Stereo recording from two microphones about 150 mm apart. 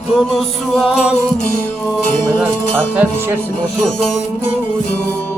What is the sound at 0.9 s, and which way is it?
Music, 50° left (ahead or behind).